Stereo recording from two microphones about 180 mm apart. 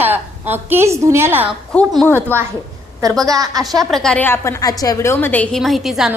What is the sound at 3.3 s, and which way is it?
Speech, 20° right (ahead or behind).